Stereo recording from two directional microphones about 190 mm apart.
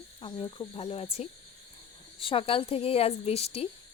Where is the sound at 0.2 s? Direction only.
30° left (ahead or behind).